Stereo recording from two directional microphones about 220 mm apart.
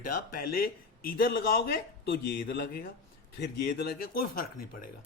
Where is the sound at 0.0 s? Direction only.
40° left (ahead or behind).